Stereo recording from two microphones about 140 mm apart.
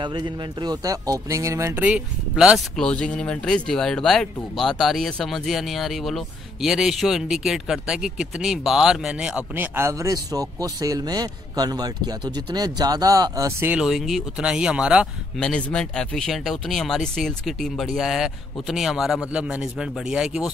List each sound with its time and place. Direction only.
0.0 s a man's voice: 35° right (ahead or behind)
1.9 s speech: 5° right (ahead or behind)
2.8 s speech: 5° left (ahead or behind)
9.8 s a man's voice: 20° right (ahead or behind)
13.7 s speech: 5° right (ahead or behind)
15.3 s speech: 5° left (ahead or behind)